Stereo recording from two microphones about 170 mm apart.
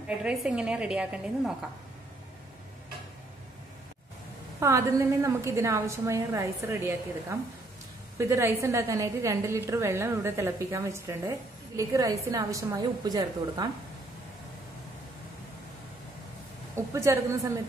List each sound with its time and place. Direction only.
0.2 s a woman's voice: 5° right (ahead or behind)
4.6 s a woman's voice: 20° right (ahead or behind)
16.7 s a woman's voice: 15° right (ahead or behind)